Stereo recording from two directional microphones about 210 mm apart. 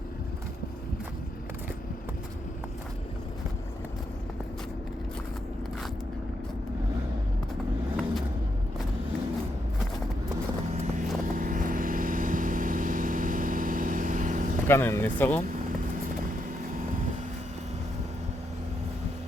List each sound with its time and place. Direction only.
10.7 s vehicle: 35° right (ahead or behind)
14.7 s speech: 10° left (ahead or behind)